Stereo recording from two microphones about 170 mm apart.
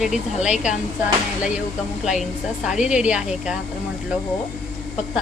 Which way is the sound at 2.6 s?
5° right (ahead or behind).